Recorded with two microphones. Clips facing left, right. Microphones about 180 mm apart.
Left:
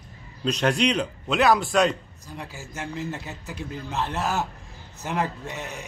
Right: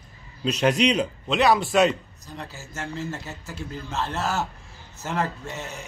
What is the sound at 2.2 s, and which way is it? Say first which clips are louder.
A man's voice: left 1 dB; 10° left (ahead or behind).